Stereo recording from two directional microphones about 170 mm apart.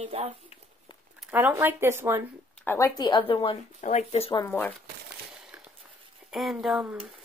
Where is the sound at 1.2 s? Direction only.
10° right (ahead or behind).